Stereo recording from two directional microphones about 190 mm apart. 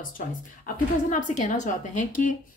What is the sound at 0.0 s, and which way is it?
A woman's voice, 45° left (ahead or behind).